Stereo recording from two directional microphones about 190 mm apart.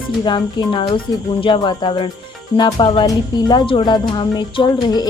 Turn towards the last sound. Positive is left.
turn(degrees=20)  # may be behind; listen again after turning